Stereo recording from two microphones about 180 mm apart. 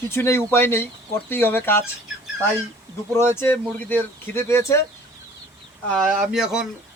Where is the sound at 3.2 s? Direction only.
15° left (ahead or behind).